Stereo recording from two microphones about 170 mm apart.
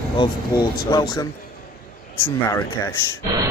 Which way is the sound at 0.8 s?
25° left (ahead or behind).